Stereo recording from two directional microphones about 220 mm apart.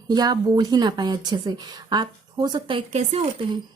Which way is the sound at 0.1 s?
20° right (ahead or behind).